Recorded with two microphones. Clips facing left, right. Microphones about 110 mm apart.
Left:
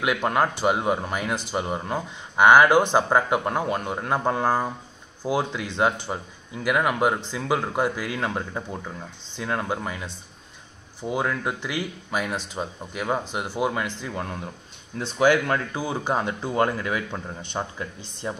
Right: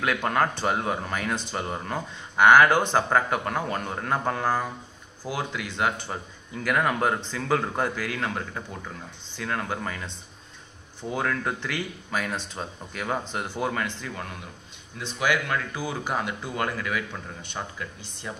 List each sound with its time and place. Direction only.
0.0 s a man's voice: 15° left (ahead or behind)
6.5 s speech: 10° left (ahead or behind)
15.0 s speech: 35° left (ahead or behind)
15.7 s a man's voice: 25° left (ahead or behind)